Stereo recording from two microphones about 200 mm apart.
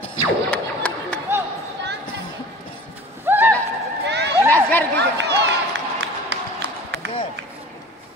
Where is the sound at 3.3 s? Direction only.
10° right (ahead or behind).